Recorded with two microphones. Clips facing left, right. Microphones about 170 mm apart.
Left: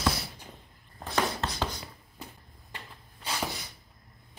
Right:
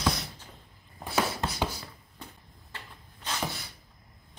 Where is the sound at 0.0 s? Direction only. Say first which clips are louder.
Even; 5° left (ahead or behind).